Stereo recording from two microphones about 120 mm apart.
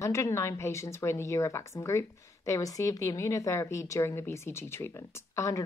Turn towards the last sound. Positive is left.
turn(degrees=25)  # may be behind; listen again after turning